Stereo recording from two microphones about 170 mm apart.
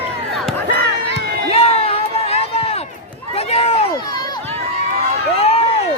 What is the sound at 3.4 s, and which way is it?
Run, 35° left (ahead or behind).